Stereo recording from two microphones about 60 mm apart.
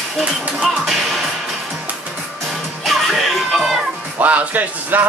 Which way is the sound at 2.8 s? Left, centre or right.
Centre.